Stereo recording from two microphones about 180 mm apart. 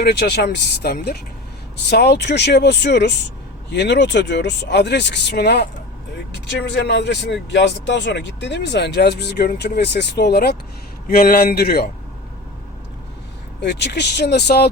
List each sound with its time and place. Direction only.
0.0 s speech: 70° left (ahead or behind)
6.5 s speech: 75° left (ahead or behind); by 11.9 s 60° left (ahead or behind)
13.6 s speech: 70° left (ahead or behind)